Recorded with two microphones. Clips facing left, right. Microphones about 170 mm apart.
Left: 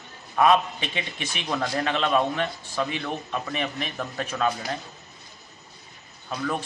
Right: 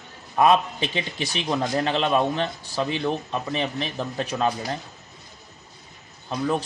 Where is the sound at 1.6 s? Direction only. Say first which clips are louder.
Right 1 dB; 25° right (ahead or behind).